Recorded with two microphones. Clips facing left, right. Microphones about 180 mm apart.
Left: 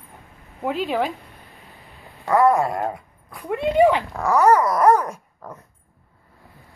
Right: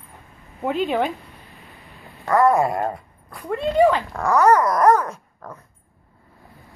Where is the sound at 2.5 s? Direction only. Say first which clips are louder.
Right 1 dB; 5° right (ahead or behind).